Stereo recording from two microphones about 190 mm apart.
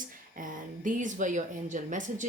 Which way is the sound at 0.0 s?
45° right (ahead or behind).